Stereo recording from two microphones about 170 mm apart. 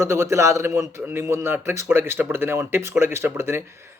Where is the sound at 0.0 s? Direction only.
15° right (ahead or behind).